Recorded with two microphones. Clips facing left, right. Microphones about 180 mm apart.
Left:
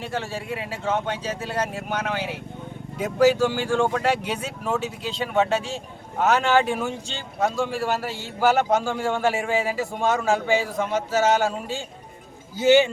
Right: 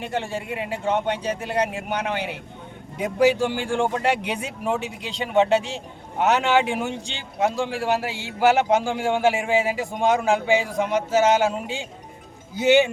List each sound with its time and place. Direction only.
0.0 s a man's voice: 15° right (ahead or behind)